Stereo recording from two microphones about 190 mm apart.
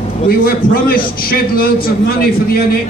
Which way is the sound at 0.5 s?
50° left (ahead or behind).